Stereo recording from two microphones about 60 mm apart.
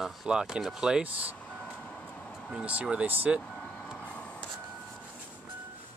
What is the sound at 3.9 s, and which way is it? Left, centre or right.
Printer, left.